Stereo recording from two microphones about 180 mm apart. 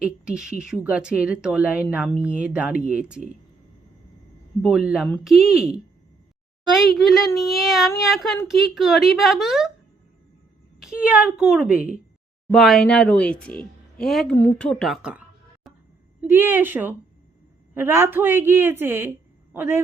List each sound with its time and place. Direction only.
0.0 s a woman's voice: 5° right (ahead or behind)
4.9 s speech: 5° right (ahead or behind)
10.8 s speech: 5° right (ahead or behind)
15.6 s a sound: centre (ahead or behind)
16.2 s a woman's voice: 10° right (ahead or behind)